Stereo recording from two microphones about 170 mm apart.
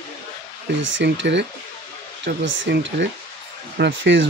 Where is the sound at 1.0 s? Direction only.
90° right.